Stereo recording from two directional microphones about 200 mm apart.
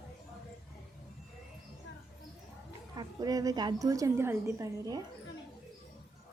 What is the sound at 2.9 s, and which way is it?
A woman's voice, 20° right (ahead or behind).